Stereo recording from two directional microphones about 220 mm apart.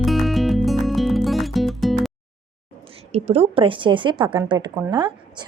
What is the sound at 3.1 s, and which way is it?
Speech, 25° right (ahead or behind).